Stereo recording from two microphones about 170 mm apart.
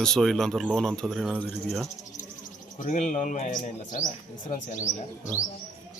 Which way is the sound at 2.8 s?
45° left (ahead or behind).